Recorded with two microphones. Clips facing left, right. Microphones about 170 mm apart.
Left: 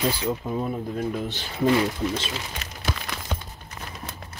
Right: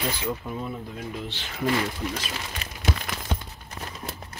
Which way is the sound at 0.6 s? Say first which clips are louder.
Left 6 dB; 45° left (ahead or behind).